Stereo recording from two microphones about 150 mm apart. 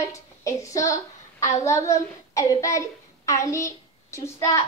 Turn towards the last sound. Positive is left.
turn(degrees=20)  # may be behind; listen again after turning